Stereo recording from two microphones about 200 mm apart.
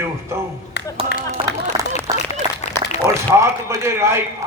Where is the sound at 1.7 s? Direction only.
25° right (ahead or behind).